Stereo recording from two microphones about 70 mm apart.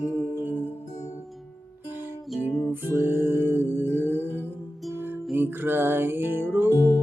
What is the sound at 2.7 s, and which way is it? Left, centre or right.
Music, right.